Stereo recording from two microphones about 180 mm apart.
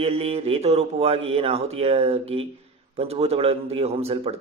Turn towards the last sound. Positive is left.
turn(degrees=-35)  # may be behind; listen again after turning